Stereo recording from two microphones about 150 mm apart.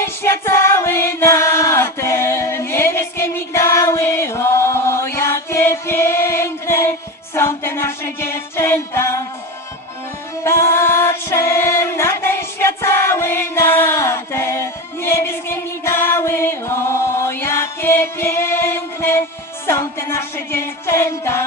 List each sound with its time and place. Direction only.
0.0 s music: 15° left (ahead or behind)
10.4 s music: 15° left (ahead or behind)